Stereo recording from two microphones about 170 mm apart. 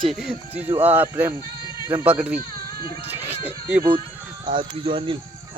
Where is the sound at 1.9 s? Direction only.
10° right (ahead or behind).